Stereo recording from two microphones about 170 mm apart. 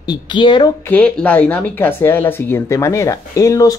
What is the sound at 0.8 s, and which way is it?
Speech, 10° left (ahead or behind).